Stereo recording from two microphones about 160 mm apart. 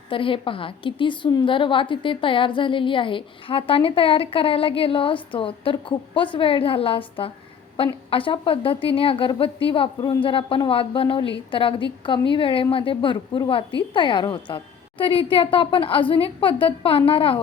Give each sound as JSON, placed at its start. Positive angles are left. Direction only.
{"t": 0.1, "sound": "a woman's voice", "side_deg": 35}